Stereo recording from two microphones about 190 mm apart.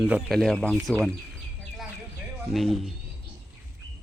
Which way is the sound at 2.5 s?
Centre (ahead or behind).